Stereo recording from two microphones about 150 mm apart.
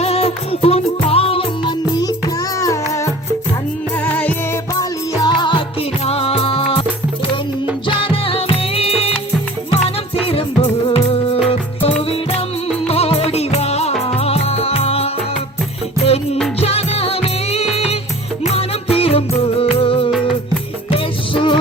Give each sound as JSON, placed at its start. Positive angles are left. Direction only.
{"t": 0.0, "sound": "music", "side_deg": 45}
{"t": 2.6, "sound": "music", "side_deg": 20}
{"t": 4.0, "sound": "music", "side_deg": 10}
{"t": 4.7, "sound": "music", "side_deg": 25}
{"t": 7.9, "sound": "music", "side_deg": 35}
{"t": 10.2, "sound": "music", "side_deg": 40}
{"t": 12.9, "sound": "music", "side_deg": 40}